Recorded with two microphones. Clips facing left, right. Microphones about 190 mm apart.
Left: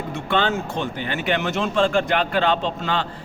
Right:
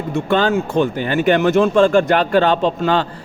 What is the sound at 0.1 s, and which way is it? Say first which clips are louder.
A man's voice: right 7 dB; 45° right (ahead or behind).